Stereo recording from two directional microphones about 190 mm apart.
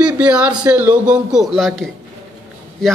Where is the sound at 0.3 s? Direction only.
5° right (ahead or behind).